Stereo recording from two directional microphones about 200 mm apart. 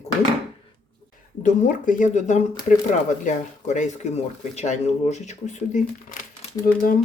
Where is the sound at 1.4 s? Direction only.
40° left (ahead or behind).